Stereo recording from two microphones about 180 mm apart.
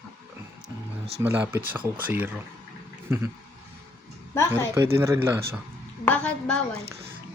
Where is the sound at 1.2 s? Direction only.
10° right (ahead or behind).